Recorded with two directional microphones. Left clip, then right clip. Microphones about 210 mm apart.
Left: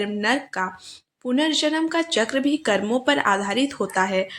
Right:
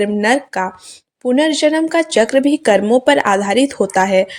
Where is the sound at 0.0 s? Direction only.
30° right (ahead or behind).